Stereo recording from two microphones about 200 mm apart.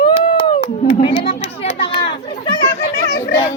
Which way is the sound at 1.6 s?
30° left (ahead or behind).